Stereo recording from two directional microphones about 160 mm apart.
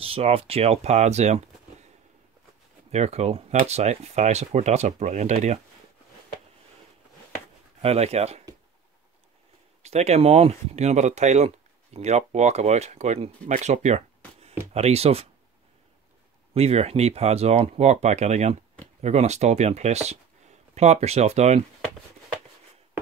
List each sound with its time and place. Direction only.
0.0 s speech: 35° right (ahead or behind)
2.9 s speech: 40° right (ahead or behind)
7.8 s speech: 40° right (ahead or behind)
9.8 s speech: 40° right (ahead or behind)
16.5 s speech: 40° right (ahead or behind)